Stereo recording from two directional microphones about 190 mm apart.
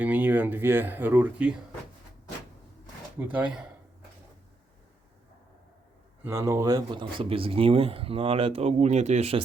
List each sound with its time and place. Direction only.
0.0 s speech: 10° right (ahead or behind)
3.2 s speech: 10° right (ahead or behind)
6.2 s speech: 15° right (ahead or behind); by 9.4 s 35° right (ahead or behind)